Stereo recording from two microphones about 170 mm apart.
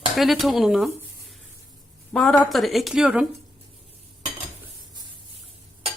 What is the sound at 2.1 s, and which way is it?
A woman's voice, 5° left (ahead or behind).